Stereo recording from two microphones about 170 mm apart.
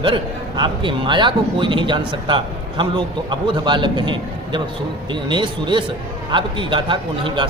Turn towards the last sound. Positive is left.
turn(degrees=-30)  # may be behind; listen again after turning